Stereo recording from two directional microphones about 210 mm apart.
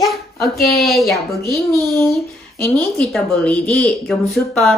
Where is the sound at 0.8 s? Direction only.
Centre (ahead or behind).